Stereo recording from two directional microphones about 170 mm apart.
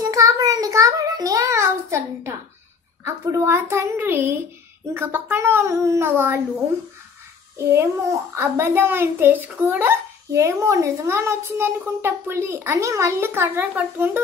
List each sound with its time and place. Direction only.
0.0 s a sound: 20° right (ahead or behind)
3.0 s a child's voice: 15° right (ahead or behind)
7.5 s a child's voice: 15° right (ahead or behind)